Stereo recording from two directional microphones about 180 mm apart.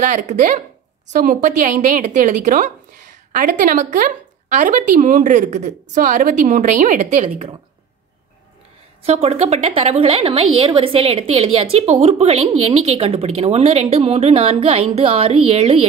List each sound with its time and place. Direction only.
0.0 s a woman's voice: 45° right (ahead or behind)
9.0 s a woman's voice: 35° right (ahead or behind)